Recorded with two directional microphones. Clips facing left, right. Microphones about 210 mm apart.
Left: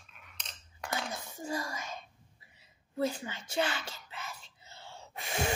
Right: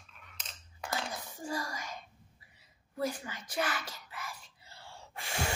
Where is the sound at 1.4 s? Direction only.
25° left (ahead or behind).